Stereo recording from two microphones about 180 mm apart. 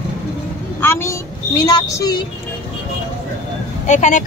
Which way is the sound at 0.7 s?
15° left (ahead or behind).